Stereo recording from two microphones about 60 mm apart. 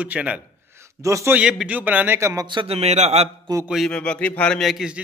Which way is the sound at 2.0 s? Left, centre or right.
Right.